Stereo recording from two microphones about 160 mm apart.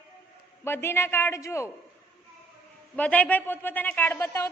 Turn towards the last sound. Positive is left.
turn(degrees=15)  # may be behind; listen again after turning